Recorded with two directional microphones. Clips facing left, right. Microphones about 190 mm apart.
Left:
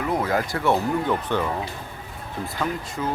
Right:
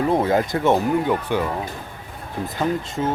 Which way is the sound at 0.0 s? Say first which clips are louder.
Right 5 dB; 30° right (ahead or behind).